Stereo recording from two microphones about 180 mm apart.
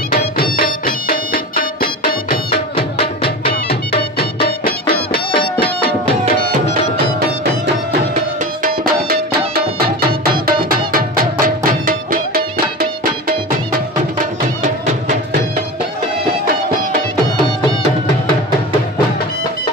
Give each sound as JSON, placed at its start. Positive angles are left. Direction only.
{"t": 0.1, "sound": "music", "side_deg": 55}
{"t": 2.7, "sound": "music", "side_deg": 30}
{"t": 5.4, "sound": "music", "side_deg": 60}
{"t": 8.6, "sound": "music", "side_deg": -55}